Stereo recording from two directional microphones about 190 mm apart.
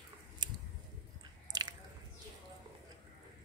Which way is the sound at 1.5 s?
20° right (ahead or behind).